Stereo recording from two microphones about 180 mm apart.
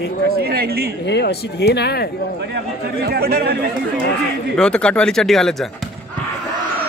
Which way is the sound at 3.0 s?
55° right (ahead or behind).